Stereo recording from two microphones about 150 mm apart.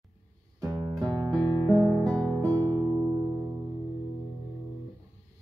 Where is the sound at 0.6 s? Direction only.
25° right (ahead or behind).